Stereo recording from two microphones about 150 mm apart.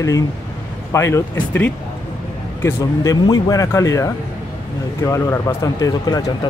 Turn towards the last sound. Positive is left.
turn(degrees=25)  # may be behind; listen again after turning